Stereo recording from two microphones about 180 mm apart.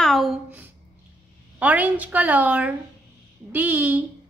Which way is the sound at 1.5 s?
10° right (ahead or behind).